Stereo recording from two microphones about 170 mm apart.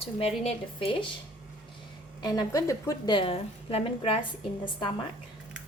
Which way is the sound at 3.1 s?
30° left (ahead or behind).